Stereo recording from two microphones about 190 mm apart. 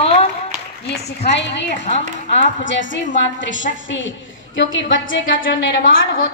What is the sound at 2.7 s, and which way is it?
A woman's voice, 75° left (ahead or behind).